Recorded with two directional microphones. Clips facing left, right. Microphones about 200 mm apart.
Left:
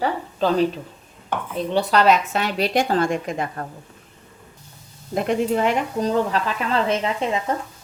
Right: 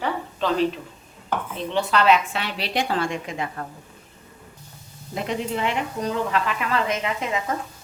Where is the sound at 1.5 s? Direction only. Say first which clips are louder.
Left 4 dB; 40° left (ahead or behind).